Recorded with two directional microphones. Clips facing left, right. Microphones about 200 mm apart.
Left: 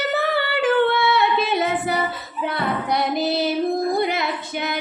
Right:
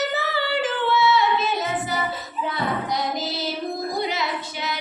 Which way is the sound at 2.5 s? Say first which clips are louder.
Left 3 dB; 60° left (ahead or behind).